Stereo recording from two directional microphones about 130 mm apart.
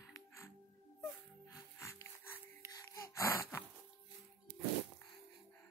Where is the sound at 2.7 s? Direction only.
25° left (ahead or behind).